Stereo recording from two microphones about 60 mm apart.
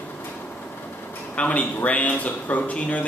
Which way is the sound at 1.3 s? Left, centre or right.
Left.